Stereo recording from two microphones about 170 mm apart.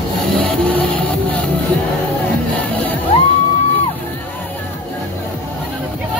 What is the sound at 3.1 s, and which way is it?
Music, 40° left (ahead or behind).